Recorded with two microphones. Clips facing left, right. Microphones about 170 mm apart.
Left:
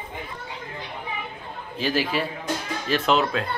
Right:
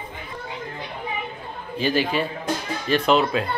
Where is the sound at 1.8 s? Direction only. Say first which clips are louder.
Right 2 dB; 5° left (ahead or behind).